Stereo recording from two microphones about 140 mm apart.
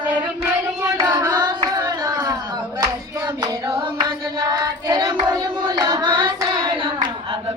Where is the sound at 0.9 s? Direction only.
25° right (ahead or behind).